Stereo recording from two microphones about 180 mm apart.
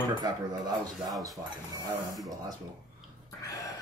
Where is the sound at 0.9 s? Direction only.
Centre (ahead or behind).